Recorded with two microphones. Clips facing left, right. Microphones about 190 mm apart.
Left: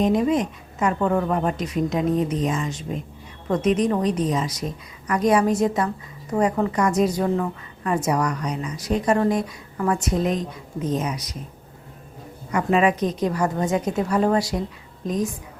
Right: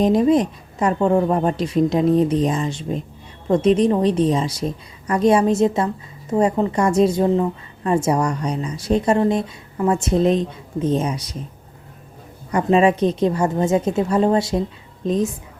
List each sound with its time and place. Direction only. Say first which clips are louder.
0.0 s a woman's voice: right 4 dB; 35° right (ahead or behind)
12.5 s a woman's voice: right 4 dB; 30° right (ahead or behind)